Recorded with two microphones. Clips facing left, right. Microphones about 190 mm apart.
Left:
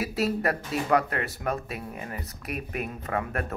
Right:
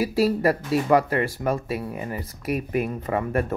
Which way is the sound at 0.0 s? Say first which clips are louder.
Right 6 dB; centre (ahead or behind).